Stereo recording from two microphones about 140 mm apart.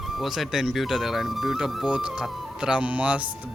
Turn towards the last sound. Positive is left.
turn(degrees=-10)  # may be behind; listen again after turning